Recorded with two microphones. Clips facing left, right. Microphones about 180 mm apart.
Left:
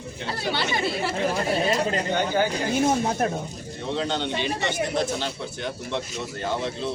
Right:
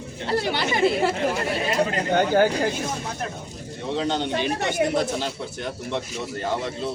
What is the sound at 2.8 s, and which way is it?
Speech, 55° left (ahead or behind).